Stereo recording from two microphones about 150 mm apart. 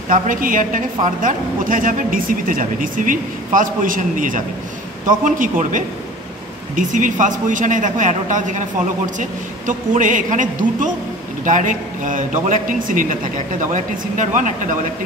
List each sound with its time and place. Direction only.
0.1 s a woman's voice: 65° right (ahead or behind)